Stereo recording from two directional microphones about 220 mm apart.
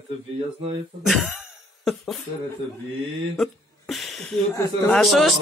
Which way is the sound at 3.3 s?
Centre (ahead or behind).